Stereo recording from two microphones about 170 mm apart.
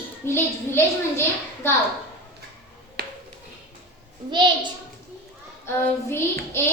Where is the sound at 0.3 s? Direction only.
15° left (ahead or behind).